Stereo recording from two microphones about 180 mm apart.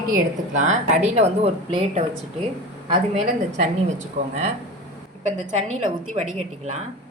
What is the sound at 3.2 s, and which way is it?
A woman's voice, 40° right (ahead or behind).